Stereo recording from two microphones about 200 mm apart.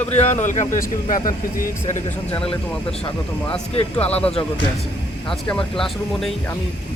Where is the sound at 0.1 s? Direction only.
35° left (ahead or behind).